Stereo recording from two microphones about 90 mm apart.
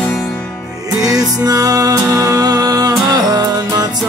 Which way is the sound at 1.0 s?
45° right (ahead or behind).